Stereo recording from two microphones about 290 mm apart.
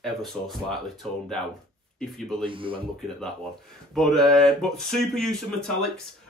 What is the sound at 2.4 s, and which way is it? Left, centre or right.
Speech, centre.